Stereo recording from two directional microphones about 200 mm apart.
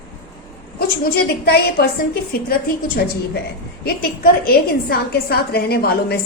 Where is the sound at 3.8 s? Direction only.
50° left (ahead or behind).